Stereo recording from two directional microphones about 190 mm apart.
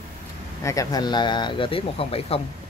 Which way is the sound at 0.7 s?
20° left (ahead or behind).